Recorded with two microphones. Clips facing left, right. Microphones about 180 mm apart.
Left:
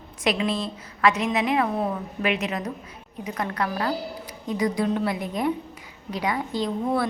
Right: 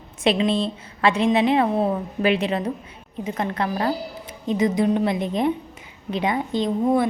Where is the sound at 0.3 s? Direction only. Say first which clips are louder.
Right 5 dB; 25° right (ahead or behind).